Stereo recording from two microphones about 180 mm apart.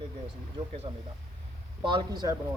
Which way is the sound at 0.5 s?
35° right (ahead or behind).